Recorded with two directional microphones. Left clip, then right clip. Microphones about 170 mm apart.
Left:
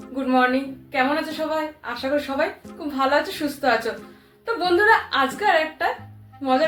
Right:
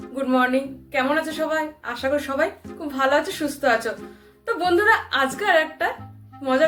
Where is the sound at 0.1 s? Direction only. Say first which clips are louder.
Left 1 dB; 10° right (ahead or behind).